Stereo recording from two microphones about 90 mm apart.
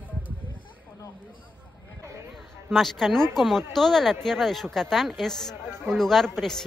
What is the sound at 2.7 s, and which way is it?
Speech, centre (ahead or behind).